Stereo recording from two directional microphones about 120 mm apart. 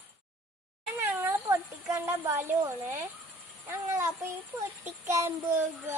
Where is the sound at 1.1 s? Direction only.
20° right (ahead or behind).